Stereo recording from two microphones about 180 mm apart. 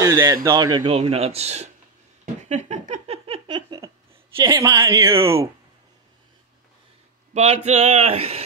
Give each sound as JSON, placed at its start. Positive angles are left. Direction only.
{"t": 0.0, "sound": "speech", "side_deg": -15}
{"t": 0.9, "sound": "speech", "side_deg": -35}
{"t": 2.4, "sound": "a sound", "side_deg": -40}
{"t": 4.4, "sound": "speech", "side_deg": -20}
{"t": 7.3, "sound": "speech", "side_deg": -35}